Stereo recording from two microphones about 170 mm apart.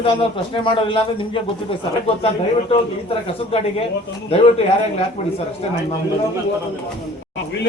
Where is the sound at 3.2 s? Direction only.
35° left (ahead or behind).